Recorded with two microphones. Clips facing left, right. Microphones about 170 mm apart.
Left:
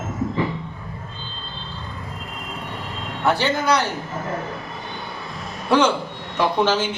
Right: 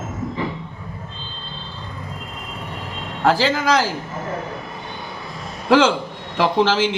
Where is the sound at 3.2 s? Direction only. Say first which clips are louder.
Right 2 dB; 90° right.